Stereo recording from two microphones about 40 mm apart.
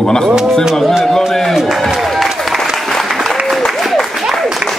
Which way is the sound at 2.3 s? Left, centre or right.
Centre.